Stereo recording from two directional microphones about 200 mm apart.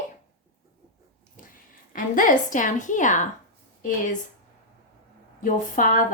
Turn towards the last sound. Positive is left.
turn(degrees=40)  # may be behind; listen again after turning